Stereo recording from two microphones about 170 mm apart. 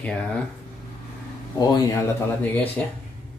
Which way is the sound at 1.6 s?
20° left (ahead or behind).